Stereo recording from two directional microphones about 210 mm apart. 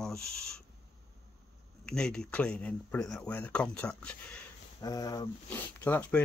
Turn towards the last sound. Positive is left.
turn(degrees=10)  # may be behind; listen again after turning